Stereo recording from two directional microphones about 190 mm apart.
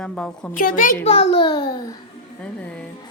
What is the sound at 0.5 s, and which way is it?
Speech, 45° left (ahead or behind).